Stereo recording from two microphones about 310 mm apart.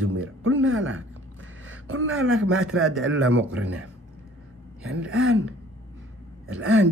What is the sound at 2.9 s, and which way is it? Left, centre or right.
Speech, right.